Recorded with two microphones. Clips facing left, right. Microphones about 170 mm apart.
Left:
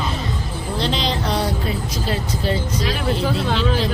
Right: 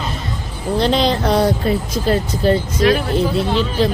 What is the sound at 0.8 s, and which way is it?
Speech, 50° right (ahead or behind).